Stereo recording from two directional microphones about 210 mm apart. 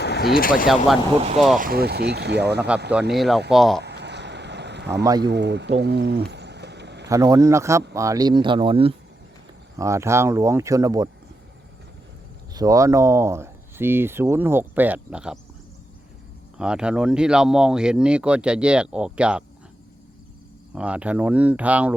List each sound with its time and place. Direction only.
0.0 s speech: 50° left (ahead or behind)
1.5 s speech: 45° right (ahead or behind)
2.9 s speech: 5° right (ahead or behind)
3.8 s a sound: 55° right (ahead or behind)
5.0 s speech: 20° right (ahead or behind)
5.3 s a sound: 55° right (ahead or behind)
7.1 s speech: 15° right (ahead or behind)
9.7 s speech: 15° right (ahead or behind)
12.5 s speech: 15° right (ahead or behind)
16.6 s speech: 5° right (ahead or behind)
20.7 s speech: 5° right (ahead or behind)